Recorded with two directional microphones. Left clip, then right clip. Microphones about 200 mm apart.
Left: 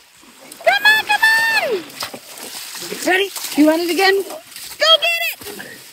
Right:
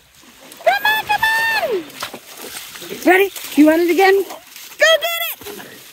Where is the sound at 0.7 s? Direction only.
20° right (ahead or behind).